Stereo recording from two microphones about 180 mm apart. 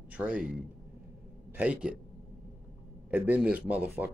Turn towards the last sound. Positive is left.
turn(degrees=-10)  # may be behind; listen again after turning